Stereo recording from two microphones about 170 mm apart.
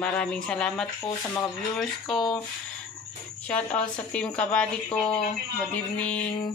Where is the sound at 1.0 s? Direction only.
15° left (ahead or behind).